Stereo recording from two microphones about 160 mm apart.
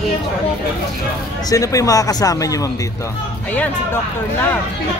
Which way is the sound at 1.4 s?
20° left (ahead or behind).